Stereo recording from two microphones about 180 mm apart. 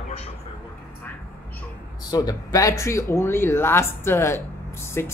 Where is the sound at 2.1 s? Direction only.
20° left (ahead or behind).